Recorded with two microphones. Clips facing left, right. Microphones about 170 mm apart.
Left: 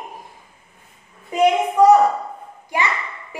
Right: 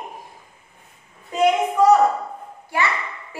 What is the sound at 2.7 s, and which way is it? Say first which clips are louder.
Speech: even; 15° left (ahead or behind).